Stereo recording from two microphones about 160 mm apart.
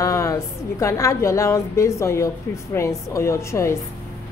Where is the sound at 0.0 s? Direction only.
20° left (ahead or behind).